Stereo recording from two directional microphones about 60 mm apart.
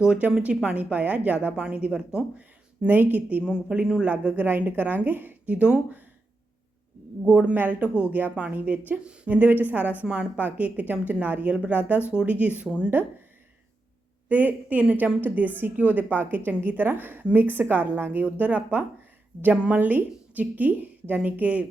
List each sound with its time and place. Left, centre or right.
0.0 s a woman's voice: centre
2.8 s a woman's voice: right
3.4 s a woman's voice: centre
4.4 s a woman's voice: right
5.5 s a woman's voice: centre
7.3 s a woman's voice: centre
7.5 s a woman's voice: right
12.9 s a woman's voice: right
14.3 s a woman's voice: right